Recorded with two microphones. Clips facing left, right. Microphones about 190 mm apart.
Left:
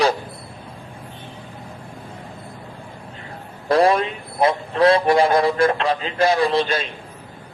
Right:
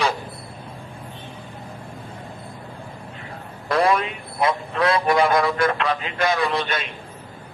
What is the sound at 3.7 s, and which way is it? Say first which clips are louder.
A man's voice: left 4 dB; 30° left (ahead or behind).